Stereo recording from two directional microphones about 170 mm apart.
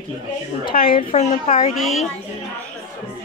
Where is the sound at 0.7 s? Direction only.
60° left (ahead or behind).